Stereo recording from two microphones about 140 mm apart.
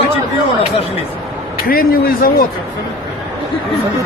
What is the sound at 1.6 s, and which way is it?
Speech, 90° left.